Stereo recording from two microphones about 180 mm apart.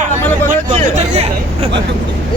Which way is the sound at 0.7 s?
35° right (ahead or behind).